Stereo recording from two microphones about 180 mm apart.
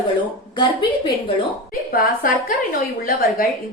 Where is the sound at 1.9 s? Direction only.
55° left (ahead or behind).